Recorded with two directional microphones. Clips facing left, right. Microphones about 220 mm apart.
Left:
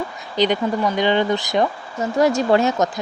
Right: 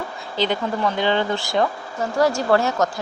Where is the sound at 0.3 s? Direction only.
15° left (ahead or behind).